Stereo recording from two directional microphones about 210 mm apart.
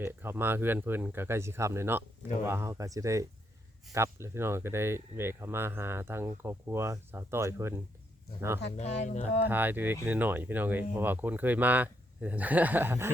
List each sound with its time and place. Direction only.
0.0 s speech: 10° right (ahead or behind)
8.7 s speech: 30° left (ahead or behind)
9.5 s speech: 10° right (ahead or behind)